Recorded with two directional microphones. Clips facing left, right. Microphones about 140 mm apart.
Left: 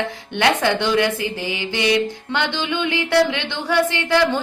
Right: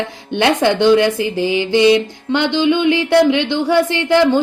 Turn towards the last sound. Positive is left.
turn(degrees=-20)  # may be behind; listen again after turning